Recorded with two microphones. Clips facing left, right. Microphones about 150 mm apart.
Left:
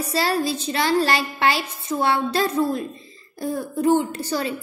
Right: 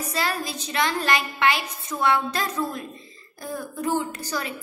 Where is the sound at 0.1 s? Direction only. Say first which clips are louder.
Left 7 dB; 30° left (ahead or behind).